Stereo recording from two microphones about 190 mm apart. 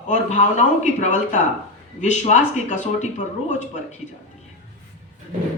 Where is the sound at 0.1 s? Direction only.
40° left (ahead or behind).